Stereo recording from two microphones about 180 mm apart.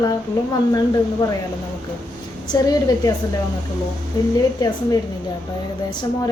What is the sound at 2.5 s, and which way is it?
Speech, 20° left (ahead or behind).